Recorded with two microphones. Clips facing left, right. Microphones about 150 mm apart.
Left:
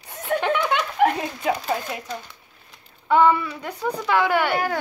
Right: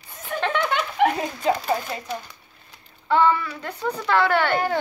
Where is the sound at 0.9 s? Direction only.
Centre (ahead or behind).